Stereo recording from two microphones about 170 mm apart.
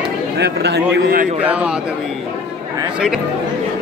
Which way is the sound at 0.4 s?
80° right.